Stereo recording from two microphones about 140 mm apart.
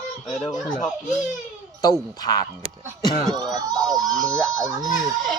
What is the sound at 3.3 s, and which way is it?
Music, 30° right (ahead or behind).